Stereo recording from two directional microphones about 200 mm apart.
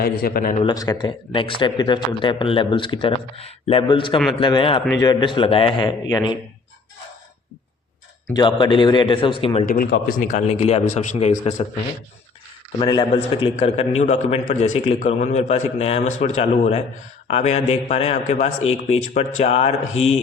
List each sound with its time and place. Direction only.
0.0 s a man's voice: 50° left (ahead or behind)
0.6 s speech: 20° left (ahead or behind)
8.4 s speech: 25° left (ahead or behind)
9.6 s a man's voice: 45° left (ahead or behind)
12.8 s a man's voice: 20° left (ahead or behind)